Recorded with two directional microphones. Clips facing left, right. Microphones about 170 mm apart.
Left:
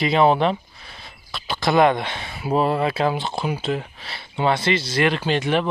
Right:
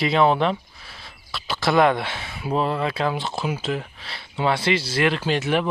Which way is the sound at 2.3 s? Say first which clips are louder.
Left 2 dB; 20° left (ahead or behind).